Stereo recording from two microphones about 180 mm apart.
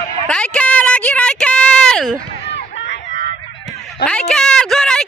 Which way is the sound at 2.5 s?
75° left (ahead or behind).